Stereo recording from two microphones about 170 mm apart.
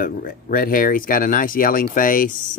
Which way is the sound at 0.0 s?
55° left (ahead or behind).